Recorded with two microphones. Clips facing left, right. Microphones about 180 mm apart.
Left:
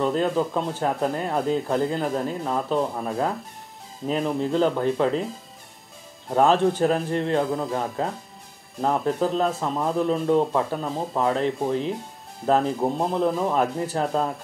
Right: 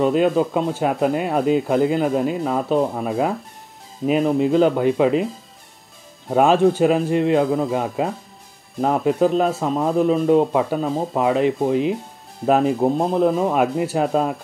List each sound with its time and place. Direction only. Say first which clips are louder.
0.0 s speech: right 5 dB; 15° right (ahead or behind)
6.3 s speech: right 4 dB; 10° right (ahead or behind)